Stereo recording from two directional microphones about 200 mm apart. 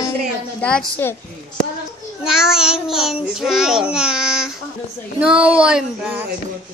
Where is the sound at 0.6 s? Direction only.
5° left (ahead or behind).